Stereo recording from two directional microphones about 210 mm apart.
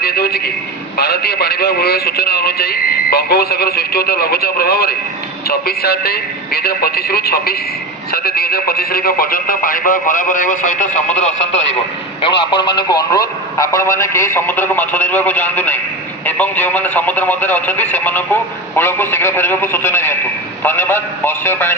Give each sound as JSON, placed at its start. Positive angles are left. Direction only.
{"t": 0.0, "sound": "a man's voice", "side_deg": 45}
{"t": 12.4, "sound": "a man's voice", "side_deg": 20}